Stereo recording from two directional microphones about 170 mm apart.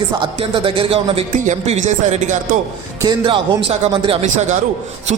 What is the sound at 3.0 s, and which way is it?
Speech, 30° right (ahead or behind).